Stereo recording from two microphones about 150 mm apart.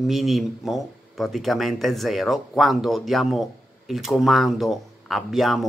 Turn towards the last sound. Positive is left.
turn(degrees=0)  # may be behind; listen again after turning